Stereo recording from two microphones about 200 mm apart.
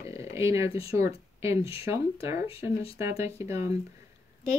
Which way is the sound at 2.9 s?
15° right (ahead or behind).